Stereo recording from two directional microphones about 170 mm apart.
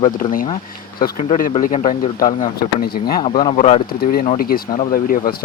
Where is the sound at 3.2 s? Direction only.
30° left (ahead or behind).